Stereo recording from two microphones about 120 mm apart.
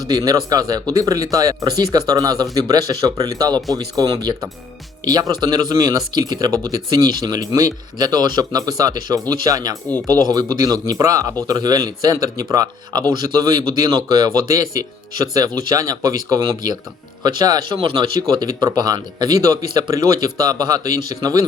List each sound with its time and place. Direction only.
0.1 s speech: 30° right (ahead or behind)